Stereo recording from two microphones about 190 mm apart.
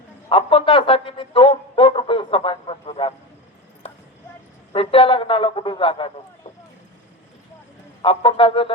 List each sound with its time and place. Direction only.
0.3 s a sound: 30° left (ahead or behind)
4.7 s speech: 30° left (ahead or behind)
8.0 s speech: 30° left (ahead or behind)